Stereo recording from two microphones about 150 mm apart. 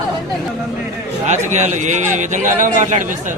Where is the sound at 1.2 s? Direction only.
50° right (ahead or behind).